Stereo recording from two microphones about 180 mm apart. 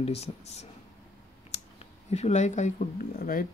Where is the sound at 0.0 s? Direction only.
35° left (ahead or behind).